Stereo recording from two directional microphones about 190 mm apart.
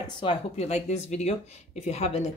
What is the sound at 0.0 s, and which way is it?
Speech, 25° left (ahead or behind).